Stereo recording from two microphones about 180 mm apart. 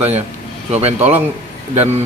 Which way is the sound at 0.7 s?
35° right (ahead or behind).